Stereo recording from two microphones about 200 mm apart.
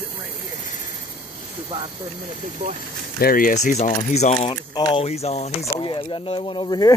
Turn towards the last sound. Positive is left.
turn(degrees=20)  # may be behind; listen again after turning